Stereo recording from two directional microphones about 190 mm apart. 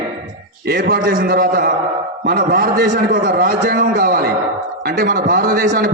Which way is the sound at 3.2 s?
60° right (ahead or behind).